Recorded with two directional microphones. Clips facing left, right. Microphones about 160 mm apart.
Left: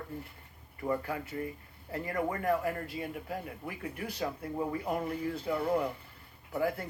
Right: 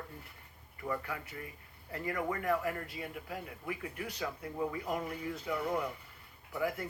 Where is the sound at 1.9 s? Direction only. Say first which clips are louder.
Left 2 dB; 30° left (ahead or behind).